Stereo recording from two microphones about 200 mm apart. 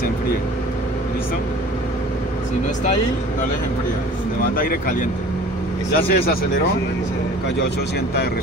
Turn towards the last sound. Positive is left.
turn(degrees=50)  # may be behind; listen again after turning